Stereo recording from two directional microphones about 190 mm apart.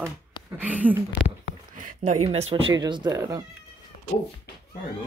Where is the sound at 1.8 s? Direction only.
35° right (ahead or behind).